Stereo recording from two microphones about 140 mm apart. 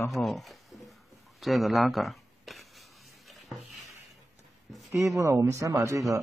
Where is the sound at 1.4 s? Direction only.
Centre (ahead or behind).